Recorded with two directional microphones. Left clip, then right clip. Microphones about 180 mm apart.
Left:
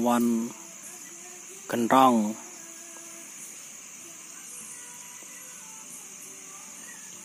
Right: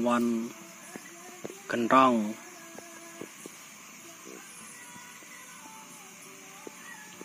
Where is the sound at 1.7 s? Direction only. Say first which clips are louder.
Left 2 dB; 25° left (ahead or behind).